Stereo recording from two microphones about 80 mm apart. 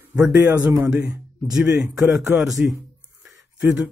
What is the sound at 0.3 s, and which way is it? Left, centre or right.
Speech, right.